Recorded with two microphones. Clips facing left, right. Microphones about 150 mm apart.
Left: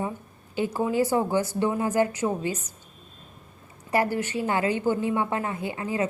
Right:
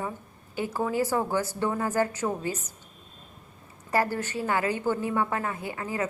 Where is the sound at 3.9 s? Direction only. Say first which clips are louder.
Left 2 dB; 20° left (ahead or behind).